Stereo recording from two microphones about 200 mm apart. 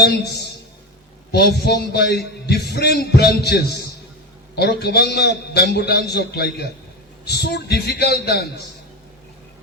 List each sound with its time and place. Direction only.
0.0 s a man's voice: 55° left (ahead or behind)